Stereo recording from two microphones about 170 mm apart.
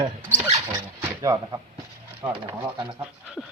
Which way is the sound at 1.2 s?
20° right (ahead or behind).